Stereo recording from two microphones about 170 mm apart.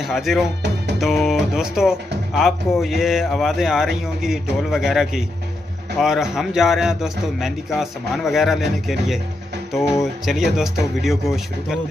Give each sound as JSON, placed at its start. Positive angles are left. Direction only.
{"t": 0.0, "sound": "speech", "side_deg": 0}
{"t": 10.2, "sound": "speech", "side_deg": 0}